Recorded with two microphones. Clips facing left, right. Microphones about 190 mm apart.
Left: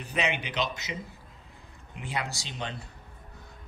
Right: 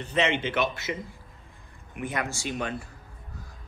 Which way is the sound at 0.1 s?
15° left (ahead or behind).